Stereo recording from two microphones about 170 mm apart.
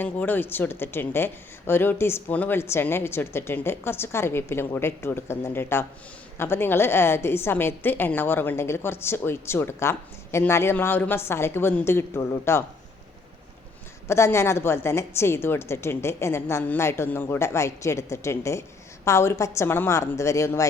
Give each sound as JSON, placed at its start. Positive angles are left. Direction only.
{"t": 0.0, "sound": "a woman's voice", "side_deg": 10}
{"t": 14.1, "sound": "a woman's voice", "side_deg": 15}